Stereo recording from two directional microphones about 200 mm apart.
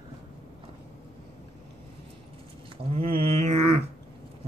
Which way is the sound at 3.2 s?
30° right (ahead or behind).